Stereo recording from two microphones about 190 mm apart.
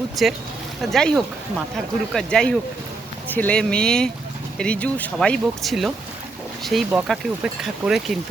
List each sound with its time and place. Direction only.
0.2 s speech: centre (ahead or behind)